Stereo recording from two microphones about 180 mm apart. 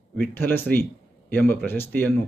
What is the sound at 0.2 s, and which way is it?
A man's voice, 10° left (ahead or behind).